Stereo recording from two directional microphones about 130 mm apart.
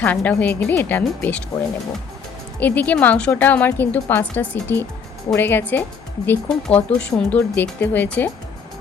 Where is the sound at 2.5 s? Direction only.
15° left (ahead or behind).